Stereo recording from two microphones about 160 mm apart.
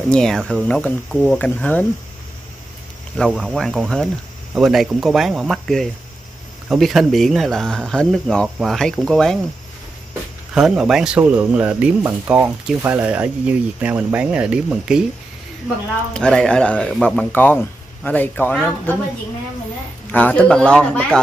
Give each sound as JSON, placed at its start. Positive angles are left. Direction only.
{"t": 0.1, "sound": "speech", "side_deg": 5}
{"t": 3.3, "sound": "speech", "side_deg": -5}
{"t": 10.5, "sound": "speech", "side_deg": -5}
{"t": 16.1, "sound": "speech", "side_deg": 5}
{"t": 20.1, "sound": "speech", "side_deg": 10}